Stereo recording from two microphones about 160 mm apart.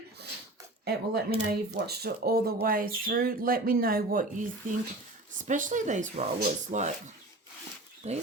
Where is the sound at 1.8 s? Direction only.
75° right (ahead or behind); by 6.9 s 50° right (ahead or behind).